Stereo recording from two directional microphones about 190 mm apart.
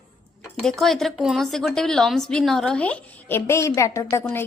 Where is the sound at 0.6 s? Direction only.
Centre (ahead or behind).